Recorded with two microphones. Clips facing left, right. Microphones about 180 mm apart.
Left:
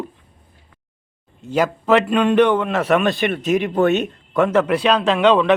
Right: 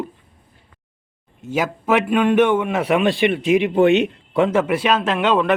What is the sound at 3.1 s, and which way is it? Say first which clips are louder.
Speech: right 3 dB; 55° left (ahead or behind).